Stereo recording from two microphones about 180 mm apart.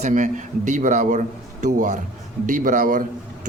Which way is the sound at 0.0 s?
45° right (ahead or behind).